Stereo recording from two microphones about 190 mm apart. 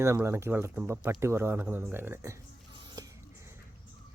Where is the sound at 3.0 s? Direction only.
20° right (ahead or behind).